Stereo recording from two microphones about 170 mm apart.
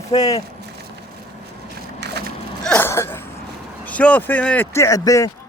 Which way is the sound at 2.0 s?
85° right.